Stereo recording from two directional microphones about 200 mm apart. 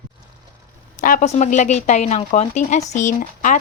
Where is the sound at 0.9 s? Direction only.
40° left (ahead or behind).